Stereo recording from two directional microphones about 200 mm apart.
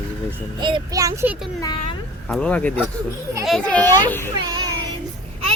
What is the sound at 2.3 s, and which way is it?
A child's voice, 5° left (ahead or behind).